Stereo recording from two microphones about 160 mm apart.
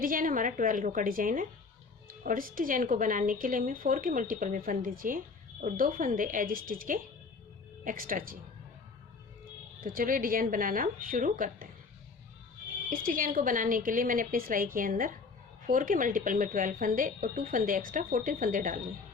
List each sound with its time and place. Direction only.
0.0 s speech: 60° right (ahead or behind)
9.8 s speech: 60° right (ahead or behind)
12.9 s speech: 60° right (ahead or behind)